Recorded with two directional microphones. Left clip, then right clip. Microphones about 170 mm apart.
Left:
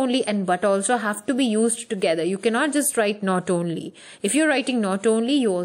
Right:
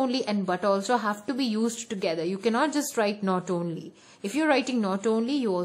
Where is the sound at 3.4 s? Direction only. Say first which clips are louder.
Left 6 dB; 20° left (ahead or behind).